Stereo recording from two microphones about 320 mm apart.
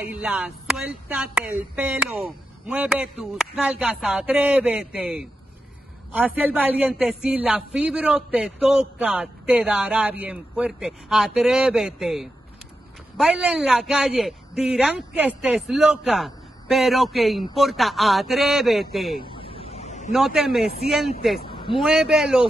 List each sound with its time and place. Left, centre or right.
0.0 s a woman's voice: centre
19.3 s snake: centre
20.1 s a woman's voice: centre
21.4 s a sound: centre
21.8 s a woman's voice: centre